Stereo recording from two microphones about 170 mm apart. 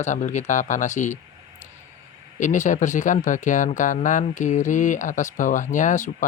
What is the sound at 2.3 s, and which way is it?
Speech, 45° left (ahead or behind).